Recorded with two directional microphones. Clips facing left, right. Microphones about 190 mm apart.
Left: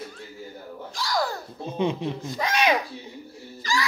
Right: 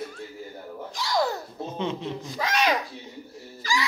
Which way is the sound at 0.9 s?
20° right (ahead or behind).